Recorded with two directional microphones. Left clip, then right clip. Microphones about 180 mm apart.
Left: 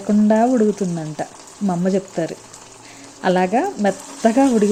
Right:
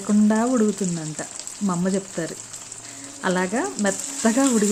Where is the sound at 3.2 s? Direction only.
20° left (ahead or behind).